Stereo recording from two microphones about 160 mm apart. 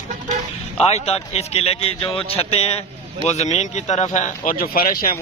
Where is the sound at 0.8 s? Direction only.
40° left (ahead or behind).